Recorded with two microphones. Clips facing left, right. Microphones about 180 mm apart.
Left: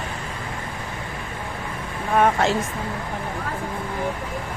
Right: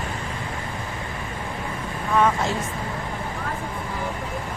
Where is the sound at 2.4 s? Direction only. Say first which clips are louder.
Left 5 dB; 70° left (ahead or behind).